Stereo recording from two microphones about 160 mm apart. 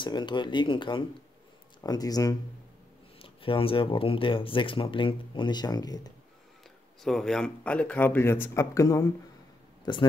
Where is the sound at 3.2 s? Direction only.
35° left (ahead or behind).